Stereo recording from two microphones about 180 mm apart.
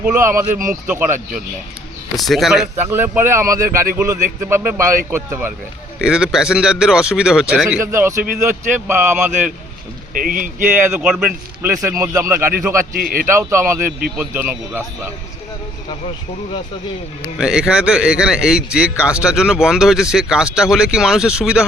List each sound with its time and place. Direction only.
0.0 s a man's voice: 10° right (ahead or behind)
2.1 s a man's voice: centre (ahead or behind)
2.9 s a man's voice: 10° right (ahead or behind)
8.1 s speech: 50° right (ahead or behind)
8.9 s a man's voice: 10° right (ahead or behind)
10.2 s speech: 50° right (ahead or behind)
10.7 s a man's voice: 10° right (ahead or behind)
12.8 s speech: 55° right (ahead or behind)
13.2 s a man's voice: 15° right (ahead or behind)
17.3 s a man's voice: 5° right (ahead or behind)